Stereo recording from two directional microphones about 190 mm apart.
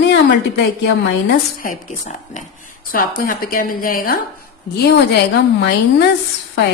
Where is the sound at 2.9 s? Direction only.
50° left (ahead or behind).